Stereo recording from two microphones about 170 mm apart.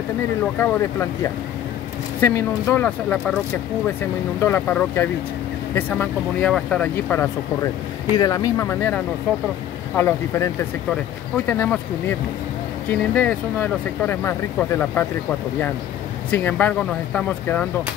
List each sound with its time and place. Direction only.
0.6 s speech: 15° left (ahead or behind)
4.4 s speech: 10° left (ahead or behind)
8.2 s speech: 25° left (ahead or behind)
16.3 s speech: 10° left (ahead or behind)